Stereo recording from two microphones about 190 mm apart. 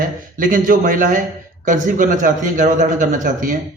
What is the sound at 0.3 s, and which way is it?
A man's voice, 45° right (ahead or behind).